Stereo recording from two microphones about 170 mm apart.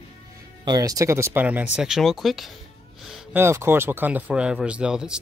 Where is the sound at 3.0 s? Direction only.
Centre (ahead or behind).